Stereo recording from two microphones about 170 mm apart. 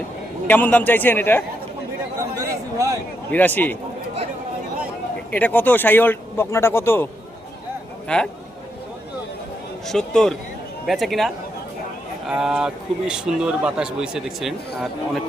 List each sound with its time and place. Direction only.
0.4 s speech: 10° left (ahead or behind)
2.7 s a sound: 20° right (ahead or behind)
3.3 s speech: 10° left (ahead or behind)
5.3 s speech: 10° left (ahead or behind)
9.8 s speech: 5° left (ahead or behind)
12.3 s speech: 5° right (ahead or behind)